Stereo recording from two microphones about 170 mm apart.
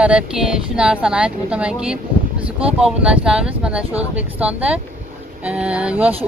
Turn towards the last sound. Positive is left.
turn(degrees=-10)  # may be behind; listen again after turning